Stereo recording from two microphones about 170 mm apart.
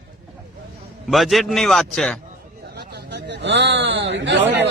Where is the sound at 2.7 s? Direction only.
75° right (ahead or behind).